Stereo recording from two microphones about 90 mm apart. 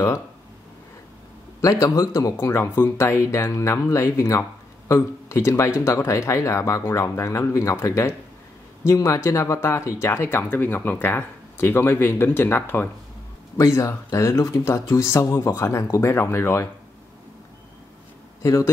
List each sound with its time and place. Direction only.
1.6 s speech: 40° left (ahead or behind); by 12.9 s 25° left (ahead or behind)
13.7 s speech: 35° left (ahead or behind)
18.4 s speech: 35° left (ahead or behind)